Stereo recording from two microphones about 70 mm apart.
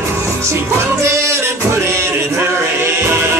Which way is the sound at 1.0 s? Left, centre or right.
Right.